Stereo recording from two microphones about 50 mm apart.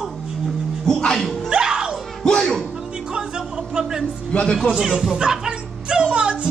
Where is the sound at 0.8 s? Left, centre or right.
Centre.